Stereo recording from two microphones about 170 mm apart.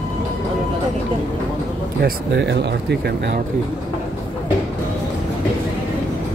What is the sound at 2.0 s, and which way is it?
Speech, 90° right.